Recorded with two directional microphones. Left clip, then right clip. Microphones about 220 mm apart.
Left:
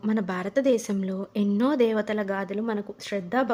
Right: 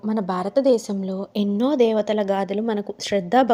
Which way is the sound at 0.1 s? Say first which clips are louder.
Right 5 dB; 5° right (ahead or behind).